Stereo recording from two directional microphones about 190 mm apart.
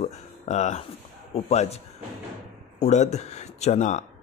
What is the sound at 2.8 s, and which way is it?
Speech, 35° left (ahead or behind).